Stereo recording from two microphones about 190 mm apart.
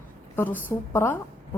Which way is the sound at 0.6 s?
10° left (ahead or behind).